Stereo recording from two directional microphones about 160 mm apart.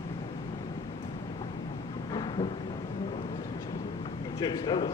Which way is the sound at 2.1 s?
30° left (ahead or behind).